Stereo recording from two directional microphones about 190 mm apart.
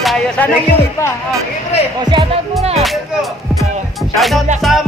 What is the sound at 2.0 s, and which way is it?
Speech, 25° right (ahead or behind).